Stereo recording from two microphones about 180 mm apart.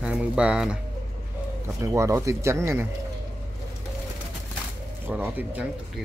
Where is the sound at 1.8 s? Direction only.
15° right (ahead or behind).